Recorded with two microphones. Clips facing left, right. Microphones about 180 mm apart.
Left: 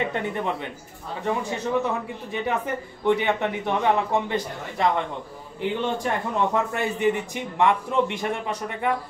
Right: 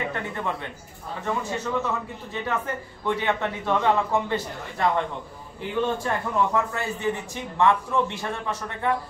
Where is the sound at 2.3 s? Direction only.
15° left (ahead or behind).